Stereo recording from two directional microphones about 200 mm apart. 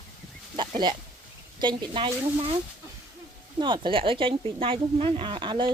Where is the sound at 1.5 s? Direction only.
20° right (ahead or behind).